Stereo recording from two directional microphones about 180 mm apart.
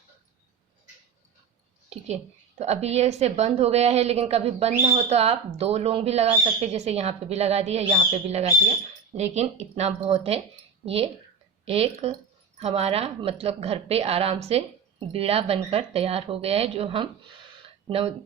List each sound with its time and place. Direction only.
1.9 s a woman's voice: 35° right (ahead or behind)